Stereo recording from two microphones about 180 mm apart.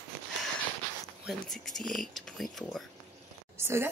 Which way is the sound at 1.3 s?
Centre (ahead or behind).